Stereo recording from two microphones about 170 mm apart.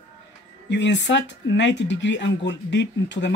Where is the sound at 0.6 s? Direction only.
90° left.